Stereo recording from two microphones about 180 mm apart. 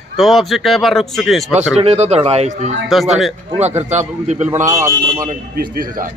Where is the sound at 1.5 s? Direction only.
35° right (ahead or behind).